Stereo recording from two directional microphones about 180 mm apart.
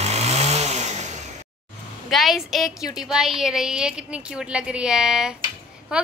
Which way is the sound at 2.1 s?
Centre (ahead or behind).